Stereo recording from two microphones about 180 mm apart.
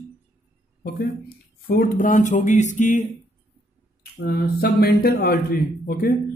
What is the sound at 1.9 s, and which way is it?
Speech, 45° left (ahead or behind).